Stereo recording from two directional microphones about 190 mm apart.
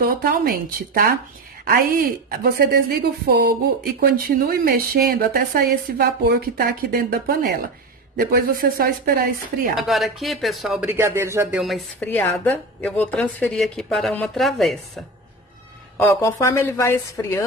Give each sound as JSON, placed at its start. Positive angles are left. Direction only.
{"t": 0.0, "sound": "a woman's voice", "side_deg": -50}
{"t": 9.8, "sound": "a woman's voice", "side_deg": 0}
{"t": 11.6, "sound": "a woman's voice", "side_deg": 5}
{"t": 16.0, "sound": "speech", "side_deg": 15}